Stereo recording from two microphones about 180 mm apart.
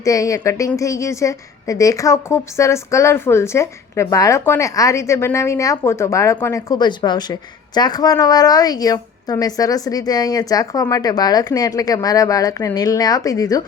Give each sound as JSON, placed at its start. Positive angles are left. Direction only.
{"t": 0.0, "sound": "a woman's voice", "side_deg": 20}